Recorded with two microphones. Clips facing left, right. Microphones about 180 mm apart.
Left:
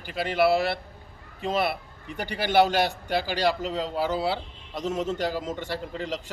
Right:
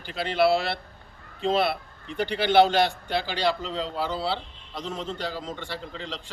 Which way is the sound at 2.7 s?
10° left (ahead or behind).